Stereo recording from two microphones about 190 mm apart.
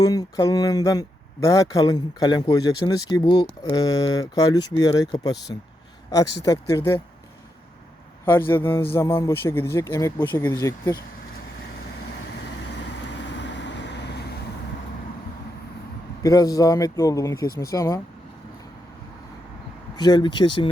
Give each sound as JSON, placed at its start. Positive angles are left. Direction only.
{"t": 0.0, "sound": "speech", "side_deg": 20}
{"t": 8.2, "sound": "speech", "side_deg": 10}
{"t": 12.7, "sound": "vehicle", "side_deg": 70}
{"t": 16.2, "sound": "speech", "side_deg": 20}
{"t": 20.0, "sound": "speech", "side_deg": 20}